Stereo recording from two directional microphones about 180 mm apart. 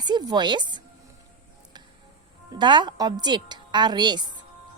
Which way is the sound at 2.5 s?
25° right (ahead or behind).